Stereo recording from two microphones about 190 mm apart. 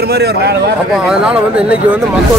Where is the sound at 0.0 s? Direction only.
55° right (ahead or behind).